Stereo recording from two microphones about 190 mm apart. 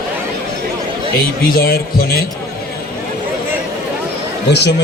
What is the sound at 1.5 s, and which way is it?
Speech, 50° left (ahead or behind).